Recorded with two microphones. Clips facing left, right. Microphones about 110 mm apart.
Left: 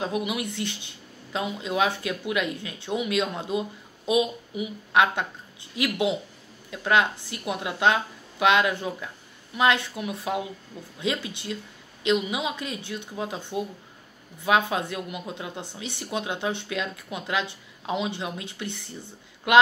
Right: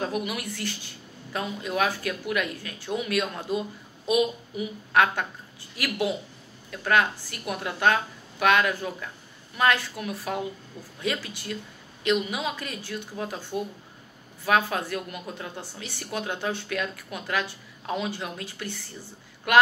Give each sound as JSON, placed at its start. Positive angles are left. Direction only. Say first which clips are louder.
{"t": 0.0, "sound": "speech", "louder": "left 2 dB", "side_deg": 15}